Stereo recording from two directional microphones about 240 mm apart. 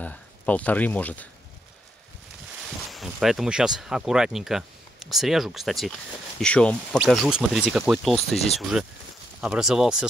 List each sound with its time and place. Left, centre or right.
0.0 s speech: centre
2.9 s speech: centre